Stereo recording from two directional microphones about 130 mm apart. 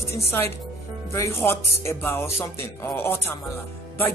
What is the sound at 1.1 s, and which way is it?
Speech, 20° left (ahead or behind).